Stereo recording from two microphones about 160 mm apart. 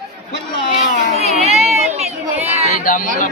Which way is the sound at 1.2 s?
40° right (ahead or behind).